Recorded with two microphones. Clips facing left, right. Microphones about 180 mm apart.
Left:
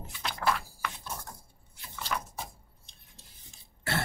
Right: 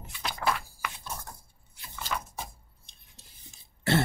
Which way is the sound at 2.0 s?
Centre (ahead or behind).